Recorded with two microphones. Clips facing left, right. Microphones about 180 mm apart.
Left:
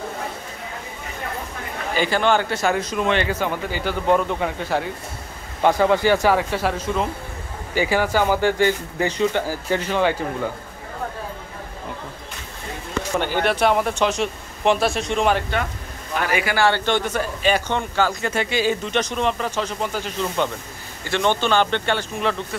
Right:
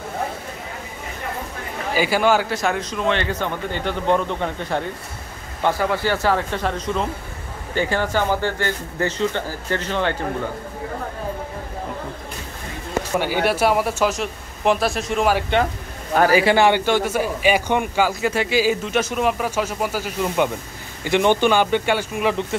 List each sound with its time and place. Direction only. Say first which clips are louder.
2.0 s speech: right 1 dB; 5° right (ahead or behind)
5.6 s speech: left 4 dB; 20° left (ahead or behind)
13.2 s speech: even; 10° right (ahead or behind)
16.2 s a man's voice: right 7 dB; 35° right (ahead or behind)
16.5 s speech: right 3 dB; 15° right (ahead or behind)